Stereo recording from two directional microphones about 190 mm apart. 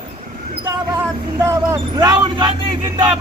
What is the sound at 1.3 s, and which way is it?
Speech, 15° right (ahead or behind).